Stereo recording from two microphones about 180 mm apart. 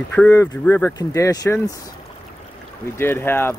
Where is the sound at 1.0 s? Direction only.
20° left (ahead or behind).